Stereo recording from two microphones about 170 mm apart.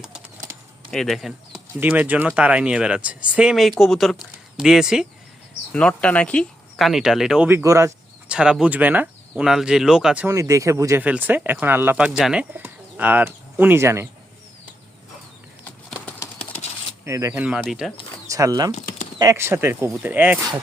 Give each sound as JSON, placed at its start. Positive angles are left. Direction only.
{"t": 0.9, "sound": "speech", "side_deg": 0}
{"t": 8.3, "sound": "speech", "side_deg": -5}
{"t": 10.2, "sound": "speech", "side_deg": -20}
{"t": 16.4, "sound": "a sound", "side_deg": 35}
{"t": 17.0, "sound": "speech", "side_deg": -15}
{"t": 17.3, "sound": "speech", "side_deg": -5}
{"t": 18.3, "sound": "speech", "side_deg": -20}
{"t": 18.7, "sound": "a sound", "side_deg": 45}
{"t": 19.2, "sound": "speech", "side_deg": -15}